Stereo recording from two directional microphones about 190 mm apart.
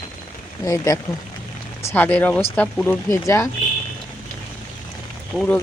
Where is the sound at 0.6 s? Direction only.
15° left (ahead or behind).